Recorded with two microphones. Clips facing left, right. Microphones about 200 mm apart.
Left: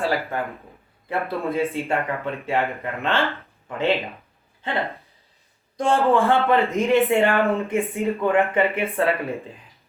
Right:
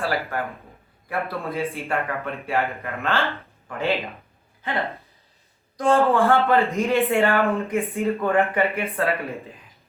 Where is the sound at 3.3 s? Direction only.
20° left (ahead or behind).